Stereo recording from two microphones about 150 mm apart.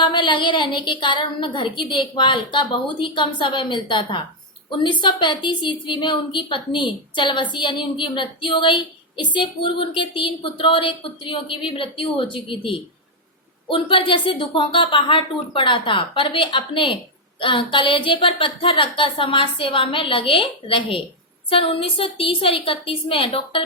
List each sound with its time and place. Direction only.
0.0 s a woman's voice: 30° left (ahead or behind)